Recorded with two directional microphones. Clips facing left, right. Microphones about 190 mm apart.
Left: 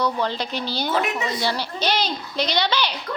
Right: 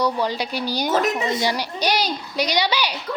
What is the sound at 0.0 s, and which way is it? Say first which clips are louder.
Speech: right 2 dB; 10° right (ahead or behind).